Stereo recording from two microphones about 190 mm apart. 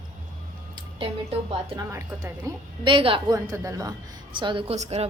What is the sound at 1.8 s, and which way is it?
A woman's voice, 15° right (ahead or behind).